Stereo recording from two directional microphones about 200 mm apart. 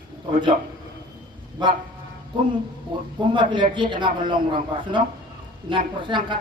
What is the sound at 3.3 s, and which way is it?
Speech, 25° right (ahead or behind).